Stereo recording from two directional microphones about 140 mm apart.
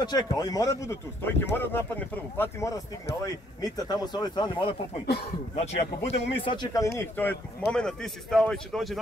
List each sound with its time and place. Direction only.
0.0 s speech: 30° left (ahead or behind)
2.7 s speech: 25° left (ahead or behind)
7.0 s speech: 15° left (ahead or behind)